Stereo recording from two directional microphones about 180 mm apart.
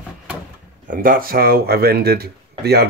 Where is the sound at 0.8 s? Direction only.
50° right (ahead or behind).